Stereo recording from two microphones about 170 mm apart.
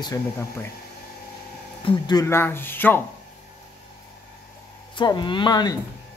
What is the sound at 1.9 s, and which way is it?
Speech, 25° left (ahead or behind).